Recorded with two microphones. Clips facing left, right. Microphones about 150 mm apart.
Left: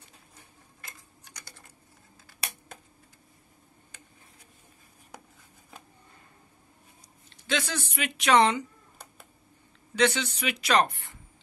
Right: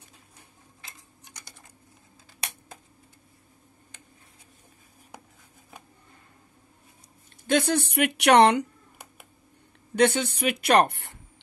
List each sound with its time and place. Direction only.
7.4 s speech: 55° right (ahead or behind)
9.9 s speech: 50° right (ahead or behind); by 11.1 s 70° right (ahead or behind)